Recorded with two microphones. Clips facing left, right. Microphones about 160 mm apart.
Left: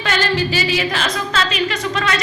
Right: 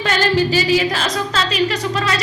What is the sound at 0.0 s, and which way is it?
A woman's voice, 40° right (ahead or behind).